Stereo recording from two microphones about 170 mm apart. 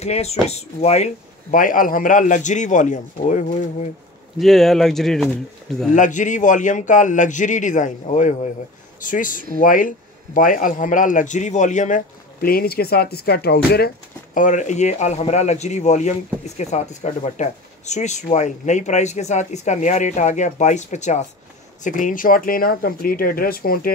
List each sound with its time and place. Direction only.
0.0 s speech: 40° left (ahead or behind)
4.4 s speech: centre (ahead or behind)
5.9 s speech: 45° left (ahead or behind)